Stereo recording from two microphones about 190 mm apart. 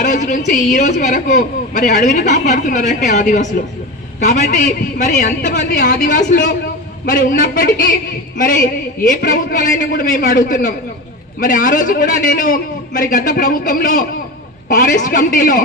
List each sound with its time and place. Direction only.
0.0 s a woman's voice: 40° left (ahead or behind)
1.7 s a woman's voice: 55° left (ahead or behind)